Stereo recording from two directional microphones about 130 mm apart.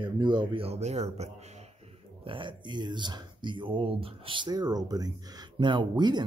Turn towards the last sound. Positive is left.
turn(degrees=-35)  # may be behind; listen again after turning